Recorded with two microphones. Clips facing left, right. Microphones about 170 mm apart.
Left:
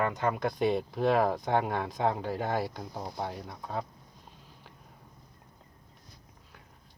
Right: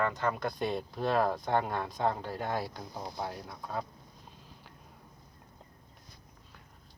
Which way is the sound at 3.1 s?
Centre (ahead or behind).